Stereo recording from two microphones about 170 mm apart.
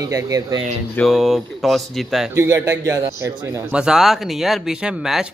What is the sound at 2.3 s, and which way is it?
A man's voice, 15° right (ahead or behind).